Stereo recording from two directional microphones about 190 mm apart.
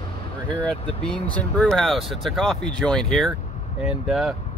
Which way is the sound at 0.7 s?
5° left (ahead or behind).